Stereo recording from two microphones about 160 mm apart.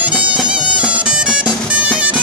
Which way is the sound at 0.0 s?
10° right (ahead or behind).